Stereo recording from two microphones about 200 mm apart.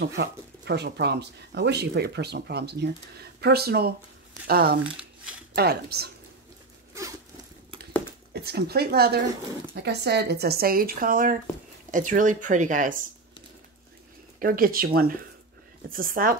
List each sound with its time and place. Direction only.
0.0 s speech: 55° right (ahead or behind)
4.8 s a sound: 5° right (ahead or behind)
5.5 s speech: 55° right (ahead or behind)
6.9 s a sound: 15° right (ahead or behind)
8.3 s speech: 55° right (ahead or behind)
14.4 s speech: 45° right (ahead or behind)